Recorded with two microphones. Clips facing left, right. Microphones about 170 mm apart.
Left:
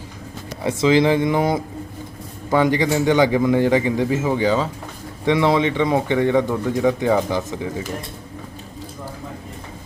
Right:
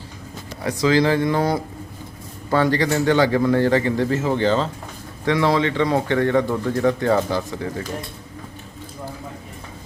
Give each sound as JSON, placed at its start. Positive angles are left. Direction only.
{"t": 0.6, "sound": "speech", "side_deg": 25}
{"t": 5.2, "sound": "speech", "side_deg": 20}